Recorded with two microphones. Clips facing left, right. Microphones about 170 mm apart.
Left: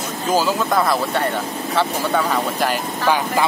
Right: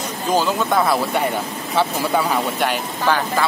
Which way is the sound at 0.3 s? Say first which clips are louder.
Even; 5° left (ahead or behind).